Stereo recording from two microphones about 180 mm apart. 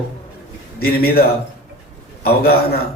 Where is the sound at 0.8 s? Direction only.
55° left (ahead or behind).